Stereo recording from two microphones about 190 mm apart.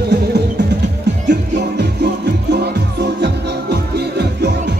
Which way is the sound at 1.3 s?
60° right (ahead or behind).